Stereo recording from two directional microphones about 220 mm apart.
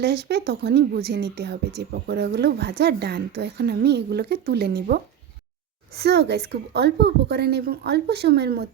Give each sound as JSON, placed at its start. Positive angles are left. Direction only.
{"t": 0.0, "sound": "a woman's voice", "side_deg": -50}
{"t": 6.0, "sound": "a woman's voice", "side_deg": -50}